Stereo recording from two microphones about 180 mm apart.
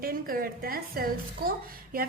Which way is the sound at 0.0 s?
55° right (ahead or behind).